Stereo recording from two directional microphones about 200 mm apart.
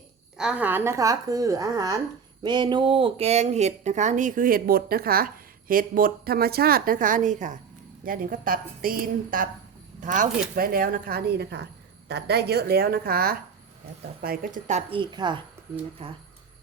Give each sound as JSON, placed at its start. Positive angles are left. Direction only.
{"t": 0.3, "sound": "a woman's voice", "side_deg": -5}